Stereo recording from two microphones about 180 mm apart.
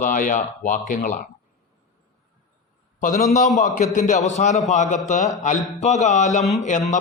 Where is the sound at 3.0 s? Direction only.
40° left (ahead or behind).